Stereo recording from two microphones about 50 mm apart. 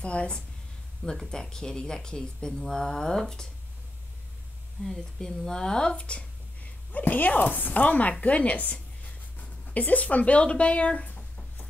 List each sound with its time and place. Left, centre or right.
0.0 s a woman's voice: left
4.8 s speech: centre